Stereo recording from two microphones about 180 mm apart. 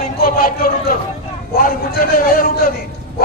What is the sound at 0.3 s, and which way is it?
A man's voice, 55° left (ahead or behind).